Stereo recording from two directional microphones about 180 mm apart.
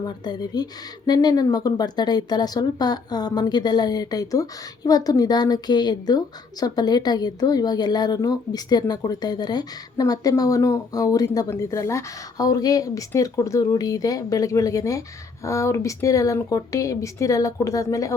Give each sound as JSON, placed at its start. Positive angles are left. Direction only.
{"t": 0.0, "sound": "speech", "side_deg": 25}